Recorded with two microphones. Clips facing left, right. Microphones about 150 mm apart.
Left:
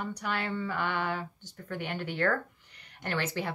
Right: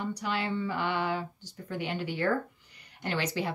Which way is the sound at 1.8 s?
55° left (ahead or behind).